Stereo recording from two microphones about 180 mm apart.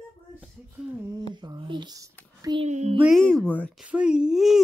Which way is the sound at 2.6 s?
35° right (ahead or behind).